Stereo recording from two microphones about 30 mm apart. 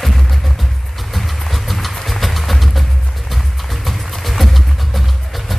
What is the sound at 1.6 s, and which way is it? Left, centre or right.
Vehicle, centre.